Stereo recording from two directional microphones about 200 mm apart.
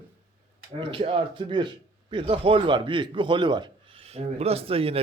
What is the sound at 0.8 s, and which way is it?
Speech, 25° right (ahead or behind).